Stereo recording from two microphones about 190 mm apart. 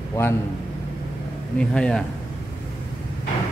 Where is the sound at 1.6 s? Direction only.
5° left (ahead or behind).